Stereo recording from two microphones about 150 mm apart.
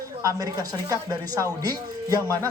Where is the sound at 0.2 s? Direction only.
20° right (ahead or behind).